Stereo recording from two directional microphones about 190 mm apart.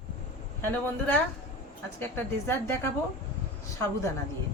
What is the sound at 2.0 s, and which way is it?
Speech, 10° left (ahead or behind).